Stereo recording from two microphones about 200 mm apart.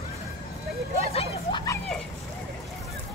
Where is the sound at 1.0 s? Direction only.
30° left (ahead or behind).